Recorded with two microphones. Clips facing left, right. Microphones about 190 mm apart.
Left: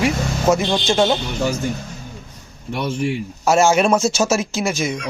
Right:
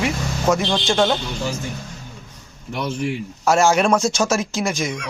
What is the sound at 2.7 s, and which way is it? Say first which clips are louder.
Speech: left 2 dB; 25° left (ahead or behind).